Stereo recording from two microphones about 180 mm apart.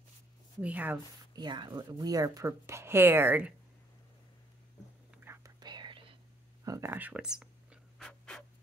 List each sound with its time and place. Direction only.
0.6 s speech: 10° right (ahead or behind)
1.3 s speech: 25° right (ahead or behind)
5.2 s whispering: 15° right (ahead or behind)
6.6 s a sound: 15° right (ahead or behind)
8.1 s pant: 5° left (ahead or behind)